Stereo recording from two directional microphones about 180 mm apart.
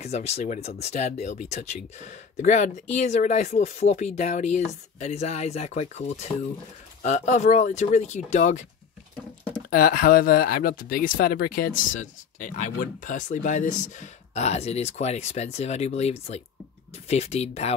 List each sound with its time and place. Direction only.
0.0 s speech: 35° left (ahead or behind)
9.7 s speech: 50° left (ahead or behind); by 17.7 s 35° left (ahead or behind)